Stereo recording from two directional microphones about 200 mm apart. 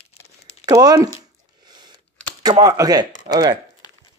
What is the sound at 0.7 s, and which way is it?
Speech, 15° right (ahead or behind).